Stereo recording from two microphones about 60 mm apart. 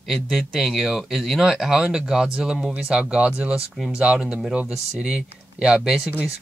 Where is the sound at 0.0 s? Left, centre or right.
Centre.